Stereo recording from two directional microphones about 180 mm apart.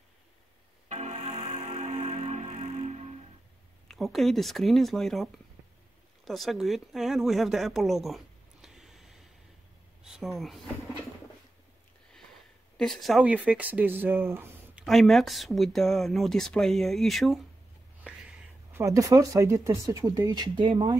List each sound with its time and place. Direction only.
0.8 s music: 40° right (ahead or behind)
3.9 s speech: centre (ahead or behind)
12.7 s speech: centre (ahead or behind)
14.9 s speech: centre (ahead or behind)
18.0 s speech: 10° right (ahead or behind)